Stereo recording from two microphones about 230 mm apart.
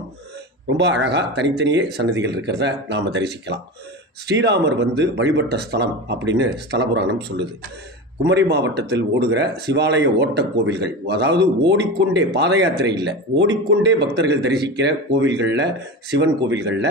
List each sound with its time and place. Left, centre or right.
0.7 s speech: right